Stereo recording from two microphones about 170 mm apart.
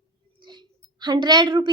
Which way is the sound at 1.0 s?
25° right (ahead or behind).